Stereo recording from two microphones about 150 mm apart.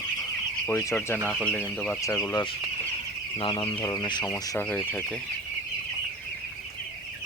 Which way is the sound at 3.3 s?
35° left (ahead or behind).